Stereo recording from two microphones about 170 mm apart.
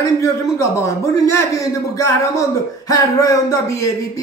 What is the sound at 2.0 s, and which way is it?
Speech, 20° left (ahead or behind).